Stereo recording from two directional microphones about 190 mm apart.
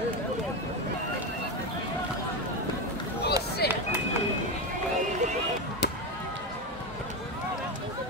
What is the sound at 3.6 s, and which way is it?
Run, 55° left (ahead or behind).